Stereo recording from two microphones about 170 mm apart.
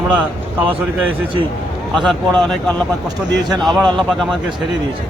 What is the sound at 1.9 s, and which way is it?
Speech, centre (ahead or behind).